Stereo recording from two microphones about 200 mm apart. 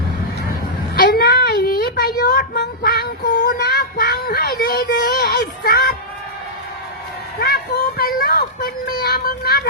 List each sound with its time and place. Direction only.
0.9 s a sound: 55° left (ahead or behind)
3.6 s child singing: 55° left (ahead or behind)
7.3 s vehicle: 50° left (ahead or behind)